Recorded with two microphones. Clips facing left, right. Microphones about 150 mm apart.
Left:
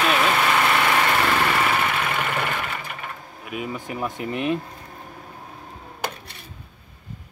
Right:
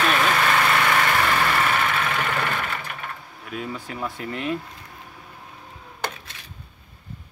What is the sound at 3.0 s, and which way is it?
Speech, 10° left (ahead or behind).